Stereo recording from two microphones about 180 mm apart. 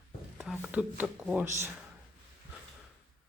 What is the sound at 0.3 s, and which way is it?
Speech, centre (ahead or behind).